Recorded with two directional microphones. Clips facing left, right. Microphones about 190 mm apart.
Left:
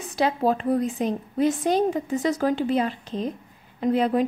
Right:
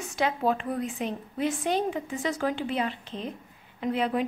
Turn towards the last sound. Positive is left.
turn(degrees=40)  # may be behind; listen again after turning